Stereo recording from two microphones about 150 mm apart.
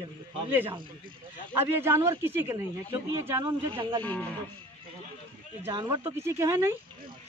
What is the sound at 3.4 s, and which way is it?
Speech, 30° right (ahead or behind).